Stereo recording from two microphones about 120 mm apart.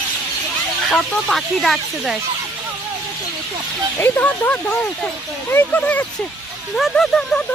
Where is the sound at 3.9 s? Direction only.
20° left (ahead or behind).